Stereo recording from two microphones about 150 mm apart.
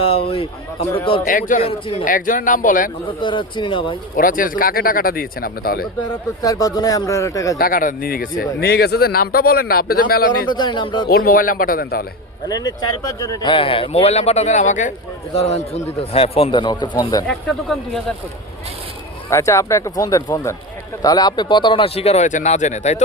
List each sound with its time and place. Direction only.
0.0 s speech: 40° left (ahead or behind)
1.3 s speech: 65° left (ahead or behind)
1.6 s speech: 40° left (ahead or behind)
2.0 s speech: 65° left (ahead or behind)
3.1 s speech: 35° left (ahead or behind)
4.2 s speech: 70° left (ahead or behind)
6.4 s speech: 25° left (ahead or behind)
7.6 s speech: 65° left (ahead or behind)
10.5 s speech: 30° left (ahead or behind)
11.1 s speech: 80° left
12.5 s speech: 25° left (ahead or behind)
17.2 s speech: centre (ahead or behind)
19.3 s speech: 20° left (ahead or behind); by 23.0 s 50° left (ahead or behind)